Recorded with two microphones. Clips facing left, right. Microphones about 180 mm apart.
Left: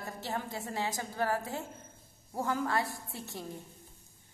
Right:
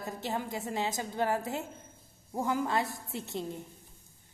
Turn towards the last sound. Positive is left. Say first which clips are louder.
# right 5 dB
turn(degrees=-20)  # may be behind; listen again after turning